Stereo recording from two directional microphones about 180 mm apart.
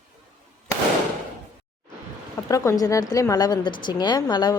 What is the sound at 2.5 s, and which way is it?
A woman's voice, 20° left (ahead or behind).